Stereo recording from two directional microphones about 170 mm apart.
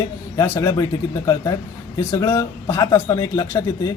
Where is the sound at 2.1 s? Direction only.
20° left (ahead or behind).